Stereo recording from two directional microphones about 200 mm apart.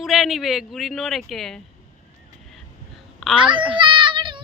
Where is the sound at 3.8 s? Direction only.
25° right (ahead or behind).